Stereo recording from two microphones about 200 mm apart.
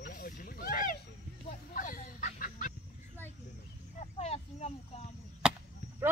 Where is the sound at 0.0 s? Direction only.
45° left (ahead or behind).